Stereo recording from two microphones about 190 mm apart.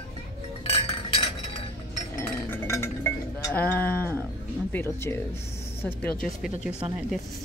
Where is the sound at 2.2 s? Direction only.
15° left (ahead or behind).